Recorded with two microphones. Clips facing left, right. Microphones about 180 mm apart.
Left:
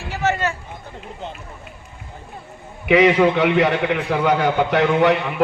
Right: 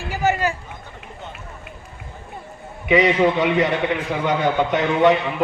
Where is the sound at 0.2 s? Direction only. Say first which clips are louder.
Right 1 dB; 10° right (ahead or behind).